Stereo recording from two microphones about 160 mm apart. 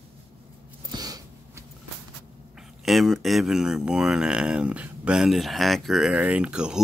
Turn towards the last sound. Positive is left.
turn(degrees=-5)  # may be behind; listen again after turning